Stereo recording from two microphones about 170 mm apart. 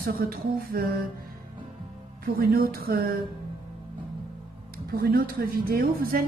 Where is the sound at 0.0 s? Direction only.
60° right (ahead or behind).